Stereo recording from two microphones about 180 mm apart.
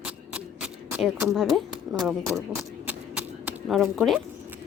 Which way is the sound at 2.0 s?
5° right (ahead or behind).